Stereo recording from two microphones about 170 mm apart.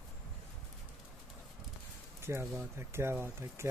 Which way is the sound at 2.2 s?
15° right (ahead or behind).